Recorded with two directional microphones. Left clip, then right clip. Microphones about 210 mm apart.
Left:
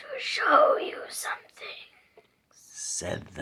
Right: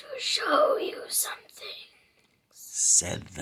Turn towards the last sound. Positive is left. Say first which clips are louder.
# right 6 dB
turn(degrees=-35)  # may be behind; listen again after turning